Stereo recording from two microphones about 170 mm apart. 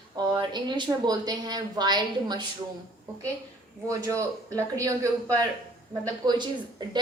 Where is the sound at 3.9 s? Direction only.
20° right (ahead or behind).